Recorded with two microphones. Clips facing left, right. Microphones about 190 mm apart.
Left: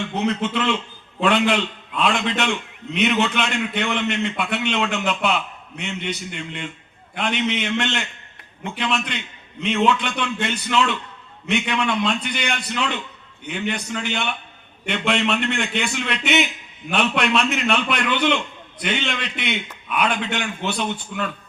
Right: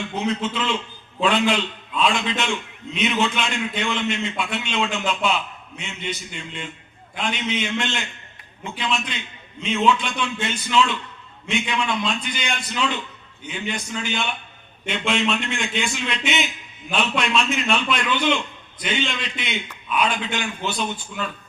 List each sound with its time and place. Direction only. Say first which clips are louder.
0.2 s a man's voice: left 2 dB; 60° left (ahead or behind)